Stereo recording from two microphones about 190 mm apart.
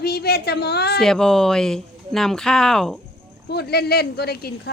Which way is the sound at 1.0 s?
Centre (ahead or behind).